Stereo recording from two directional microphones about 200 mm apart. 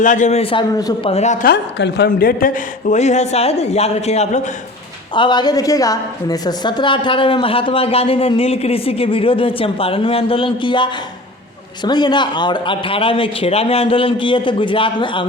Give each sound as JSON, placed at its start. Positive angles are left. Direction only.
{"t": 0.0, "sound": "speech", "side_deg": 40}
{"t": 0.8, "sound": "a woman's voice", "side_deg": 20}
{"t": 1.1, "sound": "speech", "side_deg": 35}
{"t": 1.8, "sound": "speech", "side_deg": 55}
{"t": 5.1, "sound": "a woman's voice", "side_deg": 25}
{"t": 11.9, "sound": "a woman's voice", "side_deg": 20}